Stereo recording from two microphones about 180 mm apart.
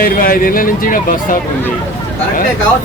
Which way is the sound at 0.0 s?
50° left (ahead or behind).